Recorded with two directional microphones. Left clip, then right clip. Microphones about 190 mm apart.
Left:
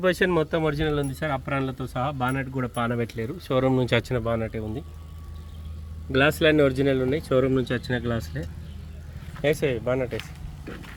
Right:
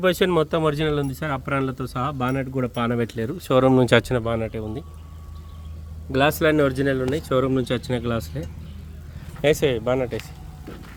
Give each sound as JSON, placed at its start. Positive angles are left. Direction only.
{"t": 0.0, "sound": "speech", "side_deg": -10}
{"t": 6.1, "sound": "speech", "side_deg": -5}